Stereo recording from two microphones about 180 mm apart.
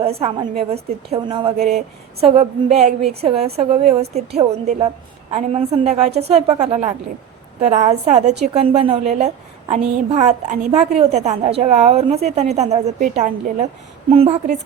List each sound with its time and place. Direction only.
0.2 s a woman's voice: 35° right (ahead or behind)